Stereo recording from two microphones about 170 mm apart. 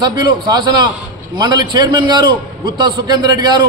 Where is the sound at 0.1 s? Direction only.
25° right (ahead or behind).